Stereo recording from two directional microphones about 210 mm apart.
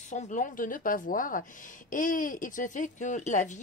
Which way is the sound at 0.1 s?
35° left (ahead or behind).